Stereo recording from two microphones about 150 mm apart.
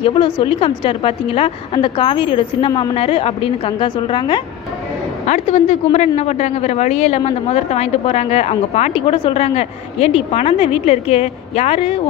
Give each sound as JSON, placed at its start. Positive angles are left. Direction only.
{"t": 0.0, "sound": "a woman's voice", "side_deg": 35}
{"t": 5.2, "sound": "a man's voice", "side_deg": 50}